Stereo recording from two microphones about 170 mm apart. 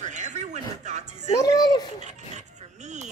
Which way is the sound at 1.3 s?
20° left (ahead or behind).